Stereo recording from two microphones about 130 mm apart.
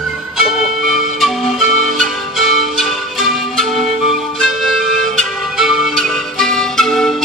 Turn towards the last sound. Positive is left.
turn(degrees=5)  # may be behind; listen again after turning